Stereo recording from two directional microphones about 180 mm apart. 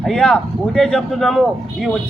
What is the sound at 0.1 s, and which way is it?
A man's voice, 5° left (ahead or behind).